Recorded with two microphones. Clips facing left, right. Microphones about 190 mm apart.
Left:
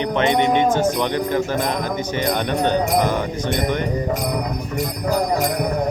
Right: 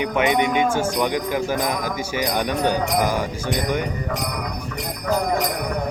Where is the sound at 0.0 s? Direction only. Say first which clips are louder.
Left 2 dB; 10° right (ahead or behind).